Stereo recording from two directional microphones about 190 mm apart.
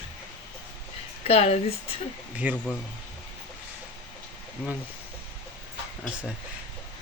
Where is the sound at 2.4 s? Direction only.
5° right (ahead or behind).